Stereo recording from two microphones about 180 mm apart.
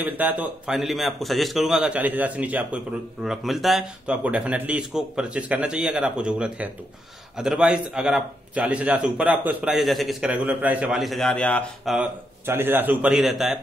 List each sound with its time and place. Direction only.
0.0 s a man's voice: 10° right (ahead or behind)
12.4 s a man's voice: 10° right (ahead or behind)